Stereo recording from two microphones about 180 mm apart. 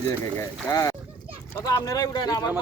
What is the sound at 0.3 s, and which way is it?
Speech, 15° left (ahead or behind).